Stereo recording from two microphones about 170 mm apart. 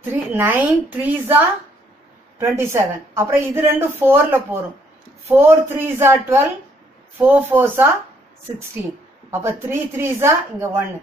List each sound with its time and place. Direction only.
0.1 s a woman's voice: 15° right (ahead or behind)
9.3 s a woman's voice: 15° right (ahead or behind)